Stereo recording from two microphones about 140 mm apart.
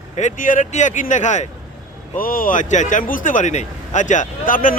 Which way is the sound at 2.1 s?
85° left.